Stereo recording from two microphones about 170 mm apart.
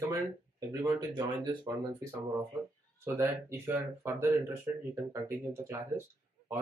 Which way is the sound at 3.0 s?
15° right (ahead or behind).